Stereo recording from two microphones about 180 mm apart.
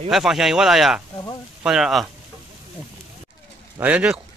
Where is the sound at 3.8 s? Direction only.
5° right (ahead or behind).